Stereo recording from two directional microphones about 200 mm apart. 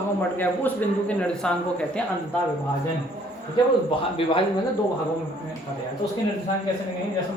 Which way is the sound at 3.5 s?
25° left (ahead or behind).